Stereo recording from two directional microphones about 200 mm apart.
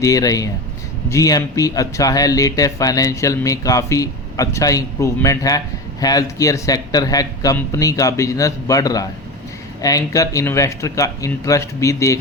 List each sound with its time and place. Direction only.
0.0 s speech: 15° left (ahead or behind)